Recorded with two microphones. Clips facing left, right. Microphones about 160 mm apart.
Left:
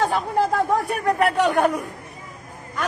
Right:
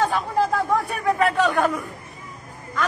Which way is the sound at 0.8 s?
20° left (ahead or behind).